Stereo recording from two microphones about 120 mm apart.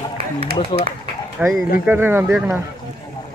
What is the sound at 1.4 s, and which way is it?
Speech, 10° right (ahead or behind).